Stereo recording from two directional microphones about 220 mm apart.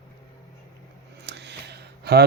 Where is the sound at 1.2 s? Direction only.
50° right (ahead or behind).